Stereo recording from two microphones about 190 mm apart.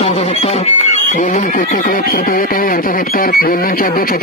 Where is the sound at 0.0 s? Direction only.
35° left (ahead or behind).